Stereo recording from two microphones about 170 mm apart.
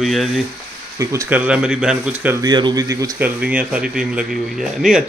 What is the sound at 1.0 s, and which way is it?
Speech, 20° right (ahead or behind).